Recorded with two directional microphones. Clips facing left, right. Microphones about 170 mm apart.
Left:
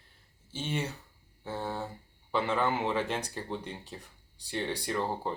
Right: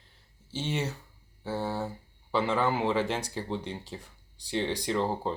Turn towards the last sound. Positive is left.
turn(degrees=-20)  # may be behind; listen again after turning